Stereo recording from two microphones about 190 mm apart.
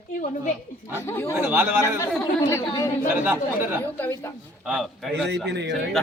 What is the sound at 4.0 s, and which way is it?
Speech, 10° left (ahead or behind).